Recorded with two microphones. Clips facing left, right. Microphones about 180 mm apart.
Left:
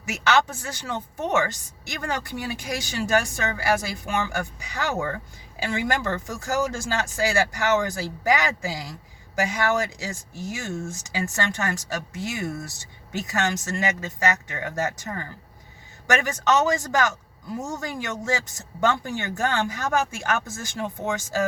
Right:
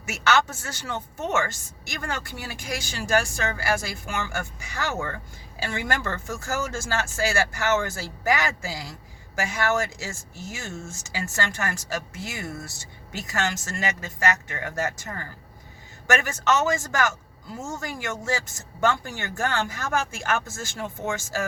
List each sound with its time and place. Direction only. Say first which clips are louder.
0.0 s speech: left 1 dB; 15° left (ahead or behind)